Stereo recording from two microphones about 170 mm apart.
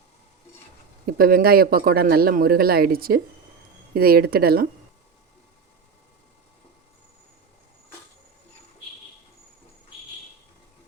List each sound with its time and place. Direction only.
1.0 s a man's voice: 60° right (ahead or behind)